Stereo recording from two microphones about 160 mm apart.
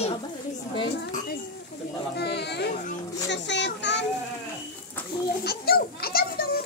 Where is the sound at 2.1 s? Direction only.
90° left.